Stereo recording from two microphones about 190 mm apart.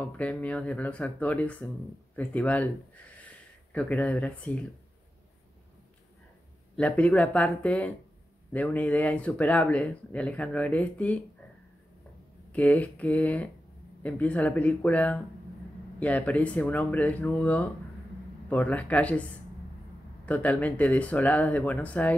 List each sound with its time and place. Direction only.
0.0 s speech: 5° left (ahead or behind)
3.3 s a sound: 5° left (ahead or behind)
6.8 s speech: 5° left (ahead or behind)
12.5 s speech: 10° left (ahead or behind)
20.2 s speech: 10° left (ahead or behind)